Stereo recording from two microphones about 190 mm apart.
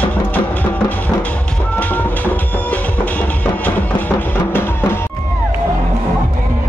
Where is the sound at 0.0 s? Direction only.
10° left (ahead or behind).